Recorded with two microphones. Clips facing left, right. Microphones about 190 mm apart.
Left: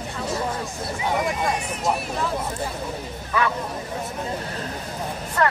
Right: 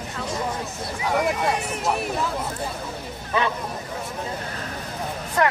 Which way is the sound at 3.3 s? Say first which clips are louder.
Even; 25° right (ahead or behind).